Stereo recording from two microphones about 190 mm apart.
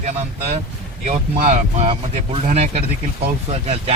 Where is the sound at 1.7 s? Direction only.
30° right (ahead or behind).